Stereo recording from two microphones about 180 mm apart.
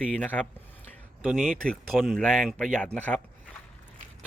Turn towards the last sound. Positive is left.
turn(degrees=5)  # may be behind; listen again after turning